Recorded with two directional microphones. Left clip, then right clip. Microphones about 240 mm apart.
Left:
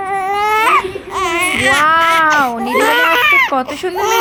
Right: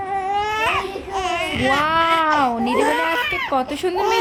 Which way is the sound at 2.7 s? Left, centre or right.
Left.